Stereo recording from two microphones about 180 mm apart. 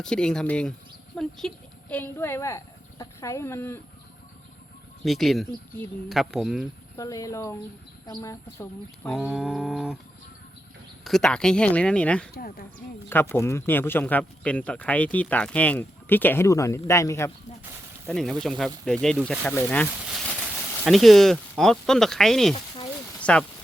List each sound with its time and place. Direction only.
0.0 s speech: 5° left (ahead or behind)
5.0 s speech: centre (ahead or behind)
6.9 s speech: 20° left (ahead or behind)
9.0 s speech: centre (ahead or behind)
11.0 s speech: 5° left (ahead or behind)
12.3 s speech: 55° left (ahead or behind)
13.1 s speech: 15° left (ahead or behind)
18.1 s speech: centre (ahead or behind)